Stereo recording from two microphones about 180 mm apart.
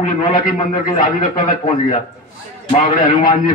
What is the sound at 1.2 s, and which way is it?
A man's voice, 30° left (ahead or behind).